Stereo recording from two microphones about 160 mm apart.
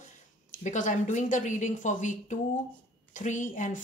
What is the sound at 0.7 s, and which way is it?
A woman's voice, 50° left (ahead or behind).